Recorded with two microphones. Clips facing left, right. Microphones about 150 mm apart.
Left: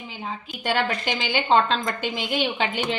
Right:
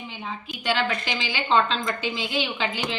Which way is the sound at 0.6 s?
50° left (ahead or behind).